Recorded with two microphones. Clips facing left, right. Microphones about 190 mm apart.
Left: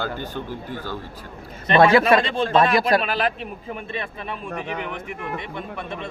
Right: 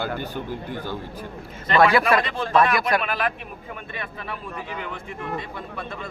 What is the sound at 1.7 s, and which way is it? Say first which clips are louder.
A man's voice: left 3 dB; 25° left (ahead or behind).